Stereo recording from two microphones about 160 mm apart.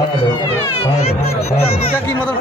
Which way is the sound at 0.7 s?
40° left (ahead or behind).